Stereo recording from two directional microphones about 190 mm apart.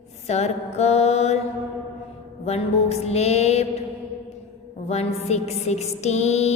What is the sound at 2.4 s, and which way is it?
Music, 30° left (ahead or behind).